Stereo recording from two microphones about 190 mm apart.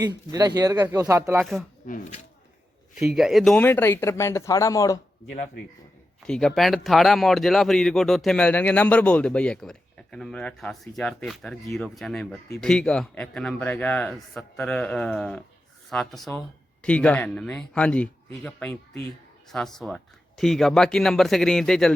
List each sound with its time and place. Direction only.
0.0 s speech: 20° right (ahead or behind)
1.9 s speech: 40° left (ahead or behind)
3.0 s speech: centre (ahead or behind)
3.6 s speech: 10° left (ahead or behind)
6.2 s speech: 5° left (ahead or behind)